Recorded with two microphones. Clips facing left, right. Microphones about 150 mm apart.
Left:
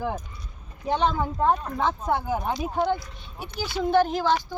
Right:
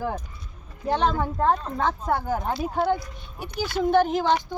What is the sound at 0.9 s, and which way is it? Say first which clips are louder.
Speech: right 1 dB; centre (ahead or behind).